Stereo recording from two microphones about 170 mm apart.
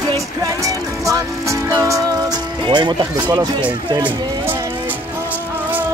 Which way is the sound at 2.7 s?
25° right (ahead or behind).